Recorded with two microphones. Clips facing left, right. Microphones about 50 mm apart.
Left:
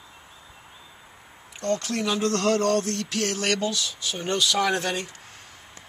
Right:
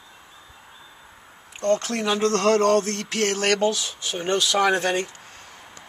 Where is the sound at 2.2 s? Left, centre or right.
Right.